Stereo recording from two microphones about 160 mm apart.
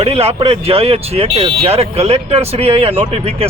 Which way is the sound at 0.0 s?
40° right (ahead or behind).